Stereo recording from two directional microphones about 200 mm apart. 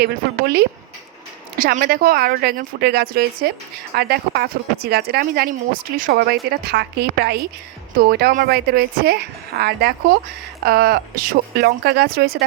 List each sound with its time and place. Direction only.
0.0 s speech: 55° right (ahead or behind)